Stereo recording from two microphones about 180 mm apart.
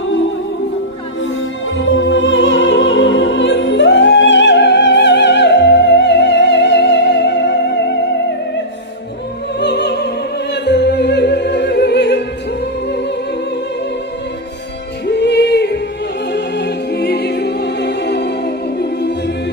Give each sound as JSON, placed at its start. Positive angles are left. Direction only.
{"t": 1.2, "sound": "music", "side_deg": 90}
{"t": 9.6, "sound": "opera", "side_deg": 70}
{"t": 15.0, "sound": "music", "side_deg": 70}